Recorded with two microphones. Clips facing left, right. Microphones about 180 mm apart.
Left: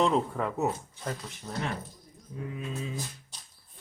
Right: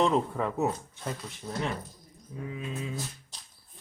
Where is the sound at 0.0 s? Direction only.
Centre (ahead or behind).